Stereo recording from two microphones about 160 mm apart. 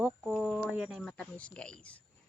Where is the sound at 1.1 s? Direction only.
5° left (ahead or behind).